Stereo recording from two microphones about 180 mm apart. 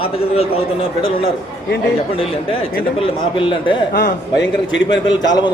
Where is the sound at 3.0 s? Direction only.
30° left (ahead or behind).